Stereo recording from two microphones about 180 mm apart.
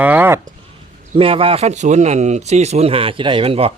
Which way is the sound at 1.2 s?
30° right (ahead or behind).